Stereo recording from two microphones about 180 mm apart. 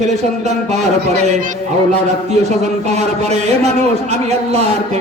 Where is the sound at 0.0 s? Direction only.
40° right (ahead or behind).